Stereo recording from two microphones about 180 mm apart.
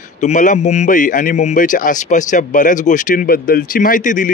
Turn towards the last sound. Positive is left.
turn(degrees=45)  # may be behind; listen again after turning